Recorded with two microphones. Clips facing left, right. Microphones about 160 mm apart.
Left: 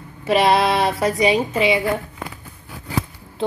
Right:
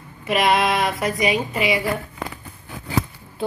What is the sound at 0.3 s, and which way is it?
A woman's voice, 30° left (ahead or behind).